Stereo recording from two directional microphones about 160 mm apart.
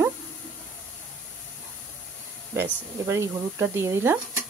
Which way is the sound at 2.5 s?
15° right (ahead or behind).